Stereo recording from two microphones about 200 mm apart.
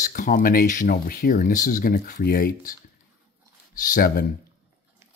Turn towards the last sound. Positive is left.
turn(degrees=45)  # may be behind; listen again after turning